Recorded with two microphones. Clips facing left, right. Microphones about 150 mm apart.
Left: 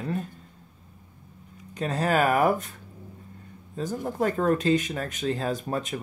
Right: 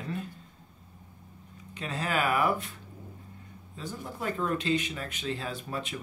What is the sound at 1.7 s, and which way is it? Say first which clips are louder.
Speech: left 7 dB; 45° left (ahead or behind).